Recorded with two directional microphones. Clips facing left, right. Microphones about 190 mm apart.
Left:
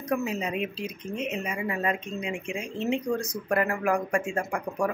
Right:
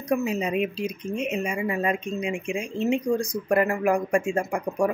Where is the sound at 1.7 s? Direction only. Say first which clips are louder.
Right 2 dB; 25° right (ahead or behind).